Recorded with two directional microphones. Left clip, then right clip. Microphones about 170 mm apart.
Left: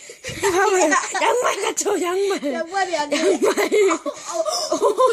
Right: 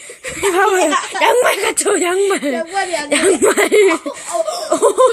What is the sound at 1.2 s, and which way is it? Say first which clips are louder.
Speech: right 6 dB; 5° right (ahead or behind).